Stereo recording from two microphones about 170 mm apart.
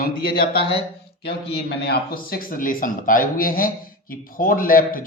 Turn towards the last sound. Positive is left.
turn(degrees=55)  # may be behind; listen again after turning